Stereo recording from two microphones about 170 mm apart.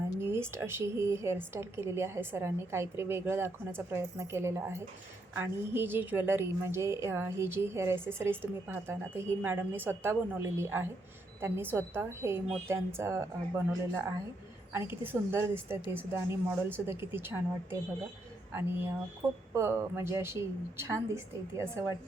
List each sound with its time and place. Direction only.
0.1 s a woman's voice: 15° right (ahead or behind)
14.7 s a woman's voice: 15° right (ahead or behind)